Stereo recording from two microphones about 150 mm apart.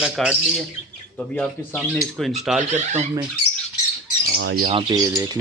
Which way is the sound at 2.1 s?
Centre (ahead or behind).